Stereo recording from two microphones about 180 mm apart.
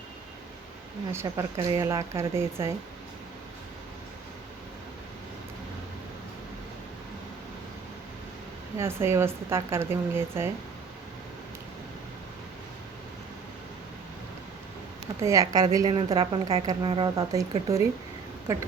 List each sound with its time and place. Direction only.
1.1 s speech: 15° right (ahead or behind)
8.8 s speech: 15° right (ahead or behind)
15.2 s a woman's voice: 20° right (ahead or behind)